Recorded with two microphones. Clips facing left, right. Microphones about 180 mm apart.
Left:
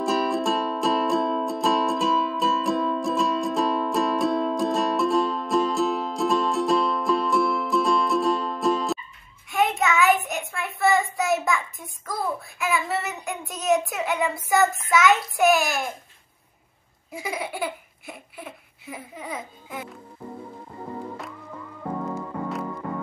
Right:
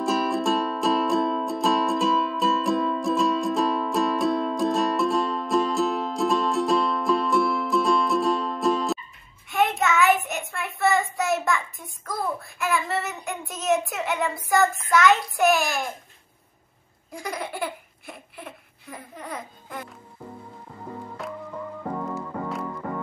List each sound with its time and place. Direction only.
0.0 s music: centre (ahead or behind)
9.5 s child singing: centre (ahead or behind)
17.1 s laughter: 5° left (ahead or behind)
22.1 s music: centre (ahead or behind)